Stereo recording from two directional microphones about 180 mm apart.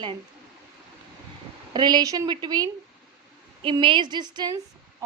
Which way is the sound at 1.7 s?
25° right (ahead or behind).